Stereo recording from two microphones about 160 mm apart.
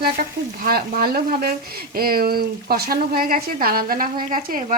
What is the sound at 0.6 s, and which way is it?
Speech, 70° right (ahead or behind).